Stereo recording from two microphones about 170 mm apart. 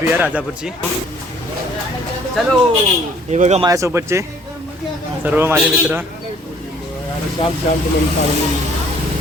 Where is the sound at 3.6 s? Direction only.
20° right (ahead or behind).